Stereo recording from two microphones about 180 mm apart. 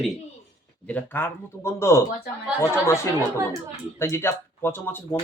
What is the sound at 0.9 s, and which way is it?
Speech, 10° left (ahead or behind).